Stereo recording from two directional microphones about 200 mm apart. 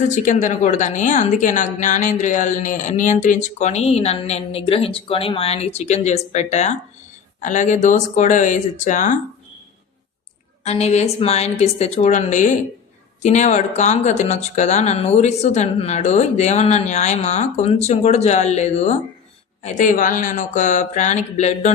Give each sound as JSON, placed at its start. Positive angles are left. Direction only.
{"t": 0.1, "sound": "a woman's voice", "side_deg": 40}
{"t": 10.6, "sound": "a woman's voice", "side_deg": 30}